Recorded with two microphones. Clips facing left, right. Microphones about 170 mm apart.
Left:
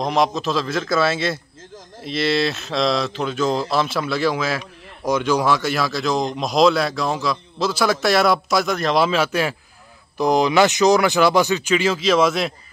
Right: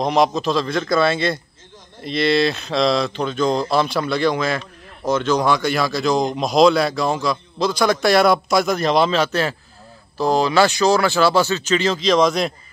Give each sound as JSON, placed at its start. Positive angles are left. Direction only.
{"t": 0.0, "sound": "speech", "side_deg": 0}